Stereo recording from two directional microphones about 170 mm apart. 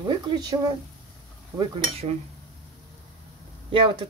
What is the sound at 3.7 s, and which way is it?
Speech, 30° right (ahead or behind).